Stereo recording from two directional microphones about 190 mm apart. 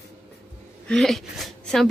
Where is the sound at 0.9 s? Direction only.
Centre (ahead or behind).